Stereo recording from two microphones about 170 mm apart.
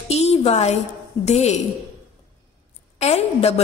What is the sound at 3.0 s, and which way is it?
Speech, 40° left (ahead or behind).